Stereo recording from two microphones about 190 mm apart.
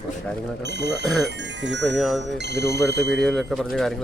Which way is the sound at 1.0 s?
Centre (ahead or behind).